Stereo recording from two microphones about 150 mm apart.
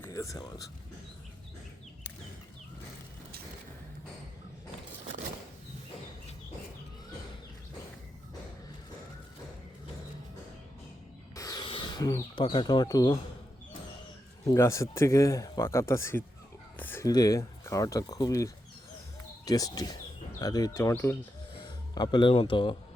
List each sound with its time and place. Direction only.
0.0 s speech: 20° left (ahead or behind)
11.3 s a sound: 25° left (ahead or behind)
14.4 s speech: 20° left (ahead or behind)
16.7 s a sound: 15° left (ahead or behind)
17.1 s speech: 25° left (ahead or behind)
21.5 s speech: 30° left (ahead or behind)